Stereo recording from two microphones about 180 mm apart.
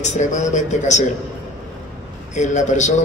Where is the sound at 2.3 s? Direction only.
40° left (ahead or behind).